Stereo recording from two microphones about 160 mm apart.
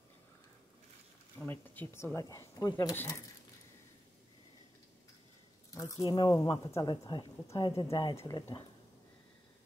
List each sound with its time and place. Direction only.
1.4 s speech: 10° left (ahead or behind)
5.7 s speech: 20° left (ahead or behind)